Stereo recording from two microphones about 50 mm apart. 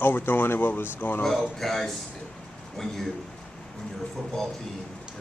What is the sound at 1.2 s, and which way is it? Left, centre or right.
Speech, centre.